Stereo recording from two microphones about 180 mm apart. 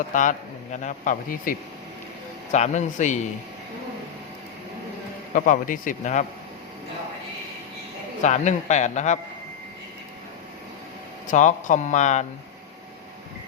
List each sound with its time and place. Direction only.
0.1 s a man's voice: 45° left (ahead or behind)
5.3 s speech: 50° left (ahead or behind)
8.2 s a man's voice: 40° left (ahead or behind)
11.3 s speech: 45° left (ahead or behind)